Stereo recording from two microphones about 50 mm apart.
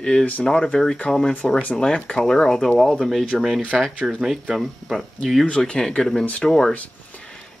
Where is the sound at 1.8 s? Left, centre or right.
Centre.